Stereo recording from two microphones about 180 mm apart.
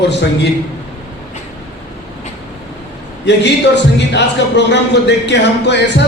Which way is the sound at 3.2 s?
70° left (ahead or behind).